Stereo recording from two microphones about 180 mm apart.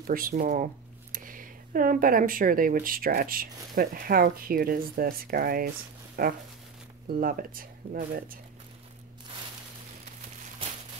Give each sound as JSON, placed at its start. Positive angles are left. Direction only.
{"t": 0.0, "sound": "speech", "side_deg": -50}